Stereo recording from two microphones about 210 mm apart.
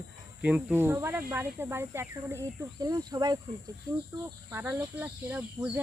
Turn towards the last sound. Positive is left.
turn(degrees=-10)  # may be behind; listen again after turning